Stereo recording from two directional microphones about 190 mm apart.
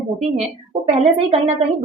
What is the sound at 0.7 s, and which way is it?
Speech, 35° right (ahead or behind).